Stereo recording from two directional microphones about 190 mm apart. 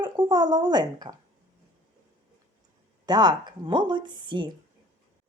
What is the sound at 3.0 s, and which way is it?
A woman's voice, 20° right (ahead or behind).